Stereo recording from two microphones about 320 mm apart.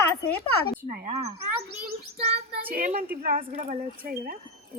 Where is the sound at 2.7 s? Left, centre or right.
Right.